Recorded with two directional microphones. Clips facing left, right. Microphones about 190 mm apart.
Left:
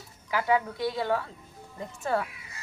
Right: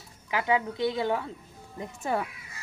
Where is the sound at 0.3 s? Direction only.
20° right (ahead or behind).